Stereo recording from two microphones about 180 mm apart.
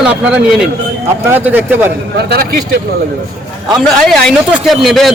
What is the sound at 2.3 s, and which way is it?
Speech, 60° right (ahead or behind).